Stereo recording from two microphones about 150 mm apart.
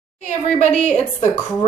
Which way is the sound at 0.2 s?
50° left (ahead or behind).